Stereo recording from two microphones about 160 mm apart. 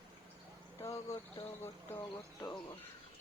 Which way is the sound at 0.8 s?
20° left (ahead or behind).